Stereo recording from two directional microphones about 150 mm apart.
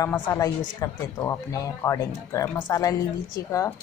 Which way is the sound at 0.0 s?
20° left (ahead or behind).